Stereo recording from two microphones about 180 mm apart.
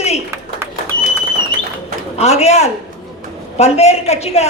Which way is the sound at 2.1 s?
35° left (ahead or behind).